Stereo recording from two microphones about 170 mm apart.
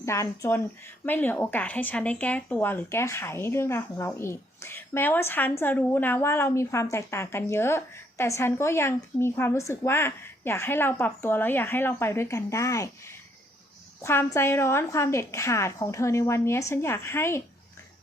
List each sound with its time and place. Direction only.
0.0 s speech: 15° left (ahead or behind)